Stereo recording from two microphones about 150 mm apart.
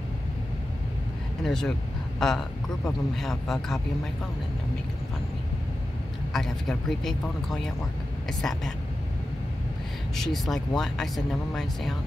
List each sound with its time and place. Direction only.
1.4 s speech: 5° left (ahead or behind)
6.3 s speech: centre (ahead or behind)
10.1 s speech: centre (ahead or behind)